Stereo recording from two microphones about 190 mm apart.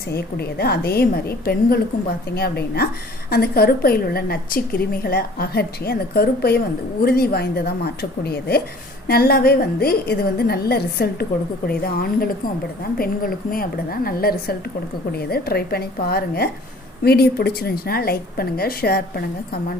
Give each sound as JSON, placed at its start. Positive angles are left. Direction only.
{"t": 0.1, "sound": "a woman's voice", "side_deg": 55}